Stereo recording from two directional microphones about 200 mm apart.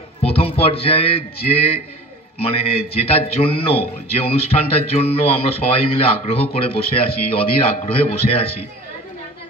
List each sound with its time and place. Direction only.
0.2 s a man's voice: 30° left (ahead or behind)
2.3 s a man's voice: 30° left (ahead or behind)